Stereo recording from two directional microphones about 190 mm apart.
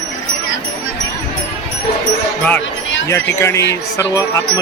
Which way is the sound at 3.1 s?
15° left (ahead or behind).